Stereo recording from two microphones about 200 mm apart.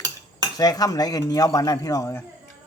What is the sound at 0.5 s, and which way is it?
Speech, 20° left (ahead or behind).